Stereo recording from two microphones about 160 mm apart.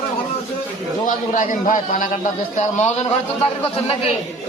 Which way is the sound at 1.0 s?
55° left (ahead or behind).